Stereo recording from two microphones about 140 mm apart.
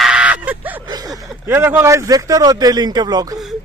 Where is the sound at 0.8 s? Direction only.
25° right (ahead or behind).